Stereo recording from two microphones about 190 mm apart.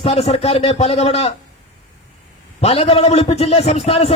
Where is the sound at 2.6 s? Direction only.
35° left (ahead or behind).